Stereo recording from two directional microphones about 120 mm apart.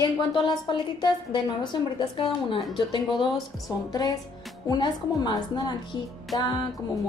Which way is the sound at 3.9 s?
30° left (ahead or behind).